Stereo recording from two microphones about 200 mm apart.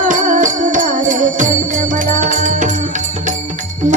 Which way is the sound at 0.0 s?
40° right (ahead or behind).